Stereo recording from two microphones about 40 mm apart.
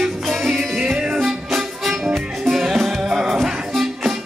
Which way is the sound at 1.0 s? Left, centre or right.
Centre.